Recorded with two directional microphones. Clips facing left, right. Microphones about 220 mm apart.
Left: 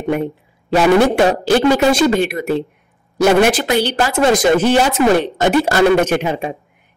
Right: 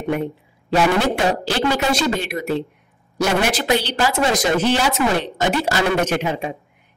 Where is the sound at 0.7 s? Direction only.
50° left (ahead or behind).